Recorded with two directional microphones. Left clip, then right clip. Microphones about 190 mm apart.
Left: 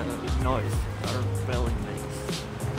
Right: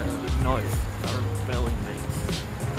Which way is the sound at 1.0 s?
Centre (ahead or behind).